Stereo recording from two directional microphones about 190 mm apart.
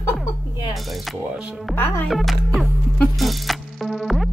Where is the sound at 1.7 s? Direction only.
10° left (ahead or behind).